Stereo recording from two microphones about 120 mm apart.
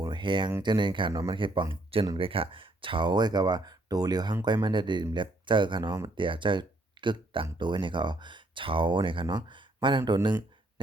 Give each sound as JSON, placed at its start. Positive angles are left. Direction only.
{"t": 0.0, "sound": "speech", "side_deg": -40}